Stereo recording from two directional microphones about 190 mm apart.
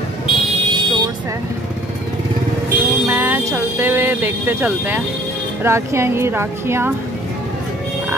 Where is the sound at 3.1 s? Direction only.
15° right (ahead or behind).